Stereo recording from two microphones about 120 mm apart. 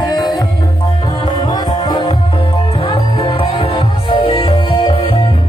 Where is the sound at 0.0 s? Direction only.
35° left (ahead or behind).